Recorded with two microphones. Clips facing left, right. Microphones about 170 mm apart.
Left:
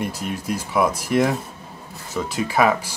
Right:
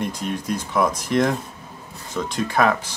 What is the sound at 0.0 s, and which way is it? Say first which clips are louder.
Speech: right 1 dB; 5° left (ahead or behind).